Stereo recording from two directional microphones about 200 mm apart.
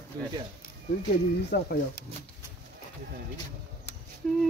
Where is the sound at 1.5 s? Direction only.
55° left (ahead or behind).